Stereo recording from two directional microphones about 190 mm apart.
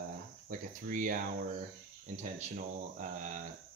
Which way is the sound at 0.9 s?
45° right (ahead or behind).